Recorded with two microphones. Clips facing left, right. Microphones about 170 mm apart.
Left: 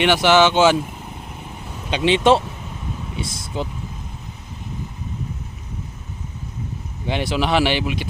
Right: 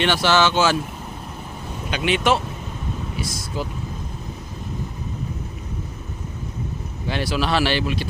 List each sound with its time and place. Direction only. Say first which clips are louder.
0.0 s speech: left 4 dB; 15° left (ahead or behind)
1.9 s speech: left 5 dB; 30° left (ahead or behind)
7.1 s speech: left 2 dB; 20° left (ahead or behind)